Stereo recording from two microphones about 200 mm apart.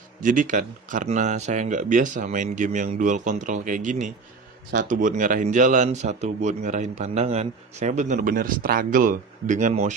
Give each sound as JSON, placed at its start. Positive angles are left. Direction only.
{"t": 0.2, "sound": "speech", "side_deg": -40}